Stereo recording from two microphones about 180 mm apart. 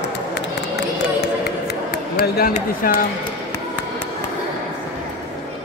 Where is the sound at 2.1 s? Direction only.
55° left (ahead or behind).